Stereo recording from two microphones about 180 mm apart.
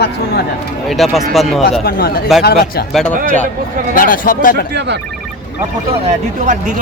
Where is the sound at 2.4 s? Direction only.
60° left (ahead or behind).